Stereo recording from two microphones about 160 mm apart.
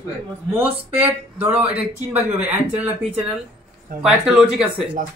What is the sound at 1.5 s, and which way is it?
Speech, 40° right (ahead or behind).